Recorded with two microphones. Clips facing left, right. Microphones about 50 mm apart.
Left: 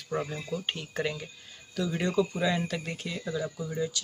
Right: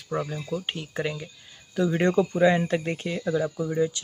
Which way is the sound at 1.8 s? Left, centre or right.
Right.